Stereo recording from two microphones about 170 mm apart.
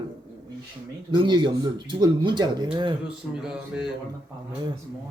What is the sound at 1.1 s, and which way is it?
A man's voice, 25° right (ahead or behind).